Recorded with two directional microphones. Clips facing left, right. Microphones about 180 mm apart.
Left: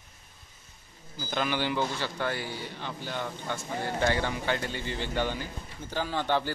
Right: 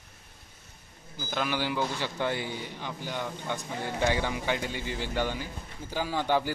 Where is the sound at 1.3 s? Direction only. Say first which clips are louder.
Left 1 dB; 5° right (ahead or behind).